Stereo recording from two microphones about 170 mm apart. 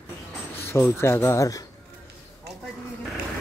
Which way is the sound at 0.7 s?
15° left (ahead or behind).